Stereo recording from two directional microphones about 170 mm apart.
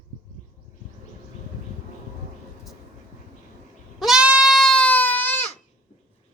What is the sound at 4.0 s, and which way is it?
Goat, 5° right (ahead or behind).